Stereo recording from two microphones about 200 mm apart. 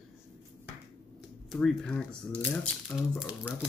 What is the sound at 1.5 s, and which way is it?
Speech, 5° left (ahead or behind).